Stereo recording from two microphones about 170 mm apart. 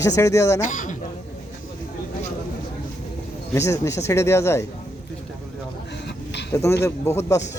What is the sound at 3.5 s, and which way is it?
Speech, 20° left (ahead or behind).